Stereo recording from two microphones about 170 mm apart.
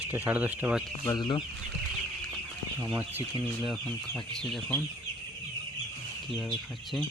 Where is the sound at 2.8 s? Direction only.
15° right (ahead or behind).